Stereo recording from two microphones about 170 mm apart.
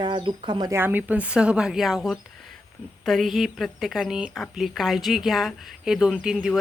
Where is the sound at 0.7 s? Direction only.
10° right (ahead or behind).